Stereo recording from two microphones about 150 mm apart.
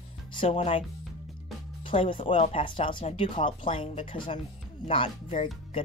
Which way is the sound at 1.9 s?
35° left (ahead or behind).